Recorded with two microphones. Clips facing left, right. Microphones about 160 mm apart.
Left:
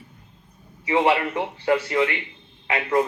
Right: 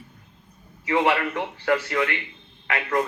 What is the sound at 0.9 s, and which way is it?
A man's voice, 20° left (ahead or behind).